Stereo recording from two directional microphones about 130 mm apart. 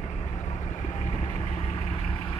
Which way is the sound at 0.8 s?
65° left (ahead or behind).